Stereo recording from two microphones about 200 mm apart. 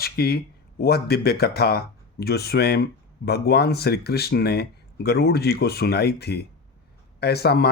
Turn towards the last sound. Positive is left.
turn(degrees=55)  # may be behind; listen again after turning